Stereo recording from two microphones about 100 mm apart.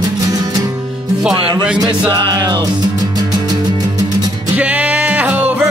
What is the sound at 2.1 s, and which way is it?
Music, 50° right (ahead or behind).